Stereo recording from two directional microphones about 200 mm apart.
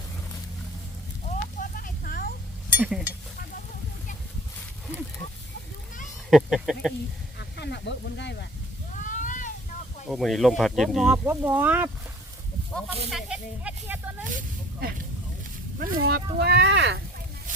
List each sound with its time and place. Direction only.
1.2 s clip-clop: 40° left (ahead or behind)
2.7 s speech: 5° right (ahead or behind)
6.3 s speech: centre (ahead or behind)
7.3 s speech: 60° left (ahead or behind)
9.0 s a sound: 40° left (ahead or behind)
10.1 s speech: centre (ahead or behind)
13.1 s speech: centre (ahead or behind)
14.3 s speech: 45° right (ahead or behind); by 17.0 s 60° right (ahead or behind)